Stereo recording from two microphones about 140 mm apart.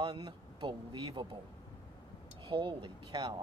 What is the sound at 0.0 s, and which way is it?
Speech, 35° right (ahead or behind).